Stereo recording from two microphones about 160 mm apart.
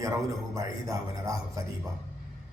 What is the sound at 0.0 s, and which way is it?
A man's voice, 20° right (ahead or behind).